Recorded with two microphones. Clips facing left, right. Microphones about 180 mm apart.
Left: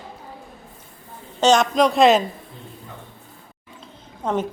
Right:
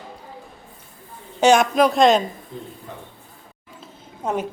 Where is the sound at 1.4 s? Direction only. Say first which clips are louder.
Right 1 dB; 10° right (ahead or behind).